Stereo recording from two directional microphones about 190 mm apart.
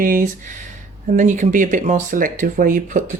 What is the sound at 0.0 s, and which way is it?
Speech, 45° right (ahead or behind).